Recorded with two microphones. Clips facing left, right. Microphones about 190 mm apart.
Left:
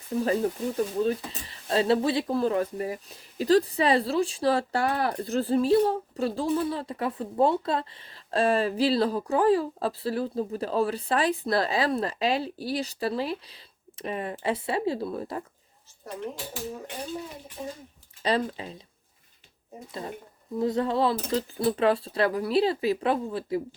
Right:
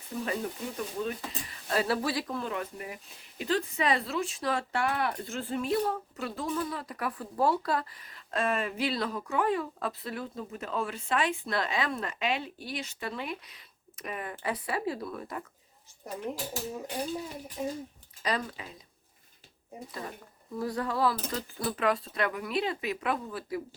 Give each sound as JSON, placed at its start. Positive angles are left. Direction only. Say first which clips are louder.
{"t": 0.3, "sound": "speech", "louder": "left 8 dB", "side_deg": 35}
{"t": 18.2, "sound": "speech", "louder": "left 6 dB", "side_deg": 30}
{"t": 19.9, "sound": "speech", "louder": "left 6 dB", "side_deg": 25}